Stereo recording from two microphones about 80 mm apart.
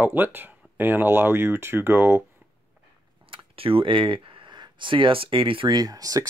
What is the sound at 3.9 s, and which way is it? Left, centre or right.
Speech, right.